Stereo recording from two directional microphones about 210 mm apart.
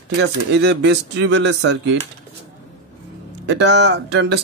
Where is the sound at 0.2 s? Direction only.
50° right (ahead or behind).